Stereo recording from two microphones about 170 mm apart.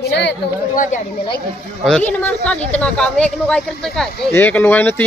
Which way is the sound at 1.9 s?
5° left (ahead or behind).